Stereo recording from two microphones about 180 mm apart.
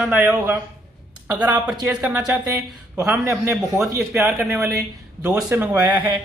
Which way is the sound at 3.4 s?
5° right (ahead or behind).